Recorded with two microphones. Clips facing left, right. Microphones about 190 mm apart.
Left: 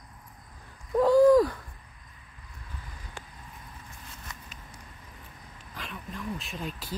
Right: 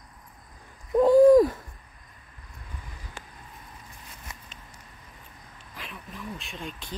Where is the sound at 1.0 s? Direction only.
25° right (ahead or behind).